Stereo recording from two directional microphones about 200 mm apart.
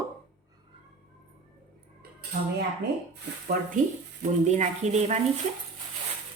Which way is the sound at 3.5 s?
45° right (ahead or behind).